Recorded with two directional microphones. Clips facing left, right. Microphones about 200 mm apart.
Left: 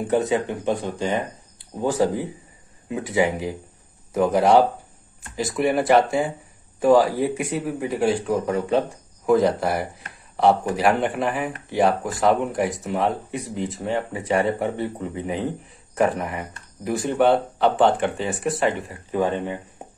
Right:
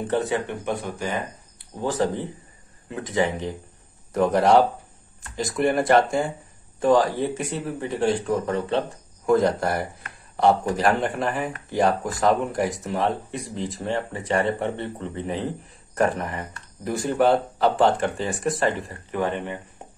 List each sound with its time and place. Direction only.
0.0 s a man's voice: 15° left (ahead or behind)
19.1 s a man's voice: 15° left (ahead or behind)